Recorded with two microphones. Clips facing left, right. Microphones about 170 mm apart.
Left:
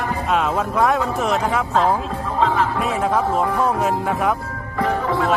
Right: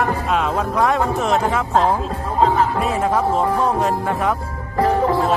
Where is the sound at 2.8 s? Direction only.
Centre (ahead or behind).